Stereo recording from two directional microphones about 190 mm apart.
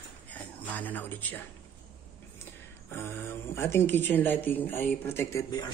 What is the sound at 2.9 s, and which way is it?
Speech, 10° left (ahead or behind).